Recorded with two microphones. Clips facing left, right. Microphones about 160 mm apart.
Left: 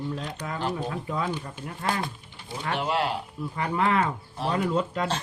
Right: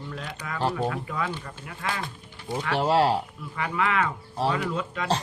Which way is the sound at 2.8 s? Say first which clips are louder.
Right 6 dB; 35° right (ahead or behind).